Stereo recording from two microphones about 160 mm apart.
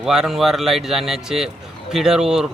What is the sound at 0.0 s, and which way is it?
Speech, 5° right (ahead or behind).